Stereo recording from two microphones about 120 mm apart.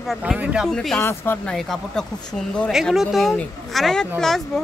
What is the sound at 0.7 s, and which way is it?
Speech, 5° left (ahead or behind).